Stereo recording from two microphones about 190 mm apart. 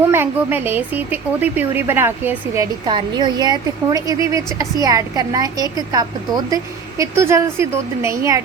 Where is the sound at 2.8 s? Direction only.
25° right (ahead or behind).